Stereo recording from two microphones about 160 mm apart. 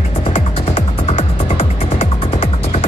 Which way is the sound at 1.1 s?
40° left (ahead or behind).